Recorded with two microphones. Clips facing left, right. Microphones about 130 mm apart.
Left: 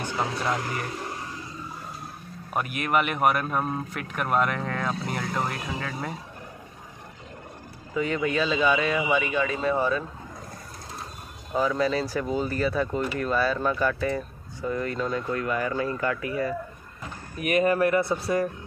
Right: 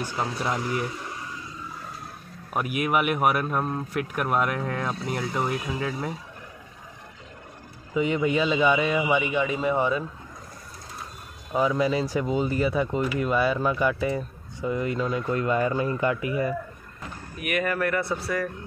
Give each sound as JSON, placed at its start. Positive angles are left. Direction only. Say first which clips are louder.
{"t": 0.2, "sound": "speech", "louder": "left 1 dB", "side_deg": -5}
{"t": 2.5, "sound": "speech", "louder": "right 1 dB", "side_deg": -5}
{"t": 7.9, "sound": "speech", "louder": "right 2 dB", "side_deg": -15}
{"t": 11.5, "sound": "speech", "louder": "right 1 dB", "side_deg": -15}
{"t": 15.3, "sound": "speech", "louder": "right 6 dB", "side_deg": -25}
{"t": 17.4, "sound": "speech", "louder": "left 4 dB", "side_deg": 30}